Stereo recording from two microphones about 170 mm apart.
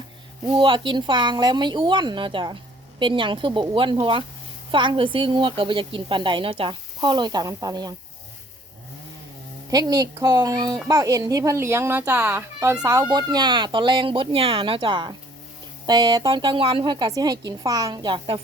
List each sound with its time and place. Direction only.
0.4 s speech: 25° right (ahead or behind)
9.6 s speech: 20° right (ahead or behind)